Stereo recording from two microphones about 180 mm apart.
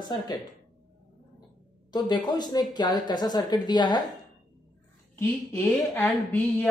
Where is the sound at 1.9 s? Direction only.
25° left (ahead or behind).